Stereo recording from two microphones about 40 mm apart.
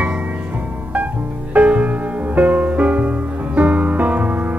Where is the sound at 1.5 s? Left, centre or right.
Right.